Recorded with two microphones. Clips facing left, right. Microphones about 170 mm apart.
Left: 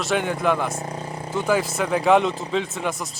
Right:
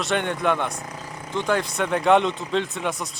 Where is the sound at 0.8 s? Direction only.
30° left (ahead or behind).